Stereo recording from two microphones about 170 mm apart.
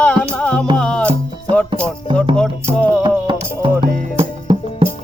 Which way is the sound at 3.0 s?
30° right (ahead or behind).